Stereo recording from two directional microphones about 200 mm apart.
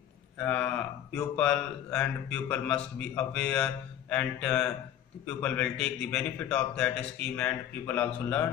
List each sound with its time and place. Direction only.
0.4 s speech: 5° left (ahead or behind)